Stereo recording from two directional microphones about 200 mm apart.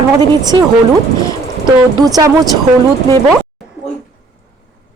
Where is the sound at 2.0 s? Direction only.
20° right (ahead or behind).